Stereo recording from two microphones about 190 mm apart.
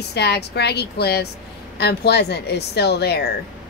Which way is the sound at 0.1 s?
60° left (ahead or behind).